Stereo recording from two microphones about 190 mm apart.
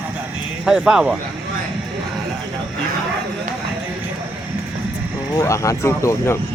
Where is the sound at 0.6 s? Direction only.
5° right (ahead or behind).